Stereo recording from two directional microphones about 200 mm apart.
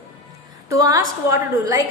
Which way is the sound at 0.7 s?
15° right (ahead or behind).